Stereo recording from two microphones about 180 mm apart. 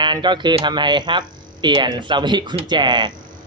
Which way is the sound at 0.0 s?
25° right (ahead or behind).